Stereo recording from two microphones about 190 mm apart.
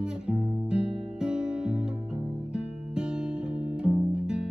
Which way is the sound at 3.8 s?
5° right (ahead or behind).